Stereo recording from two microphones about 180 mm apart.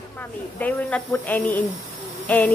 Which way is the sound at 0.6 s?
10° left (ahead or behind).